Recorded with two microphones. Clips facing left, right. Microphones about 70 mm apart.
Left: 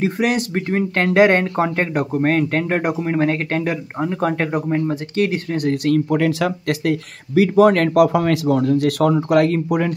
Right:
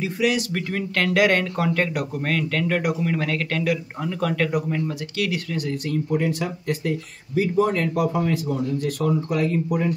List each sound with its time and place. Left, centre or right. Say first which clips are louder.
0.0 s speech: left 3 dB; left
0.5 s speech: left 6 dB; left
5.7 s speech: left 8 dB; left